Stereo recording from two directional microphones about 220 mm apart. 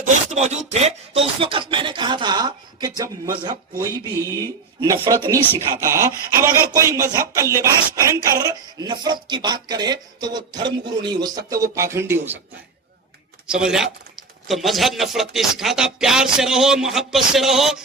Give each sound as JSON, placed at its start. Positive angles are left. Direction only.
{"t": 0.1, "sound": "speech", "side_deg": -30}
{"t": 13.5, "sound": "speech", "side_deg": -5}